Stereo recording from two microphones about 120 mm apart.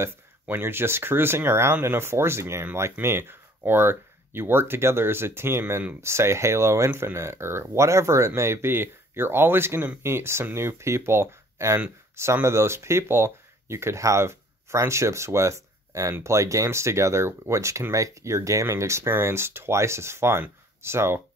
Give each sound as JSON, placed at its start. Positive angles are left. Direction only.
{"t": 0.0, "sound": "speech", "side_deg": -20}